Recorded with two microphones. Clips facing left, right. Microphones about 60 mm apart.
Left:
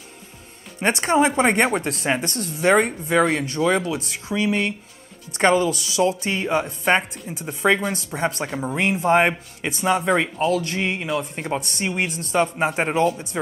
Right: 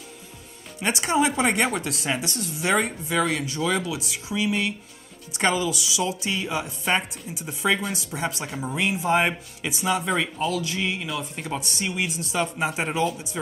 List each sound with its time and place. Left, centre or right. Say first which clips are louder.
0.7 s speech: left 4 dB; left
7.3 s a man's voice: left 5 dB; left
12.0 s a man's voice: left 6 dB; left